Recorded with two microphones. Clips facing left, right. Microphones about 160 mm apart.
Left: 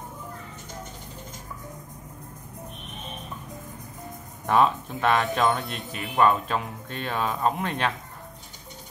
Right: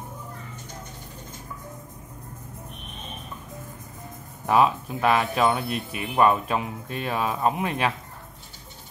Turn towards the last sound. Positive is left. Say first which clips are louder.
# right 1 dB
turn(degrees=-5)  # may be behind; listen again after turning